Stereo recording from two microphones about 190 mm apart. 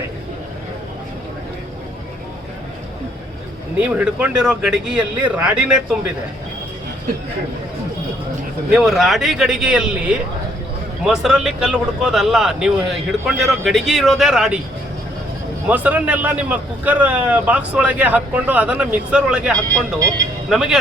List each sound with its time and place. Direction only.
3.8 s speech: 10° right (ahead or behind)
8.7 s speech: centre (ahead or behind)
15.7 s a man's voice: 10° right (ahead or behind)
20.0 s a man's voice: 20° right (ahead or behind)
20.5 s speech: 5° right (ahead or behind)